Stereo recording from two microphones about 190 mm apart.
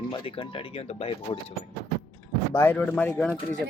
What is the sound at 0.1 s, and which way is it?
Speech, 25° left (ahead or behind).